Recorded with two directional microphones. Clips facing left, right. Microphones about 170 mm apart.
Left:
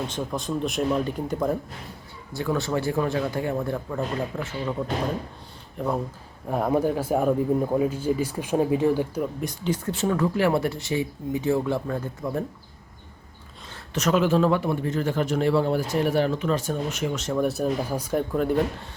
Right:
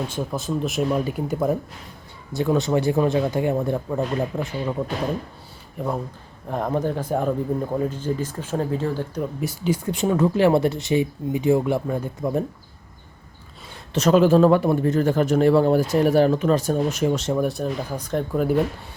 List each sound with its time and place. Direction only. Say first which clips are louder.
0.1 s speech: right 2 dB; 5° right (ahead or behind)
2.3 s speech: right 5 dB; 20° right (ahead or behind)
5.7 s speech: even; centre (ahead or behind); by 9.2 s 15° left (ahead or behind)
9.4 s speech: right 3 dB; 5° right (ahead or behind)
13.9 s speech: right 5 dB; 30° right (ahead or behind)
17.3 s speech: even; centre (ahead or behind)